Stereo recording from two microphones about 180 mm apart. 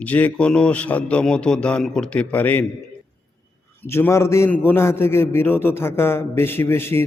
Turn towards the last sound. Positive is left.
turn(degrees=15)  # may be behind; listen again after turning